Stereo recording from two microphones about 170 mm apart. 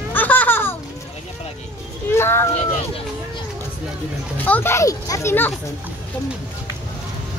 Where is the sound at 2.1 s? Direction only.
15° left (ahead or behind).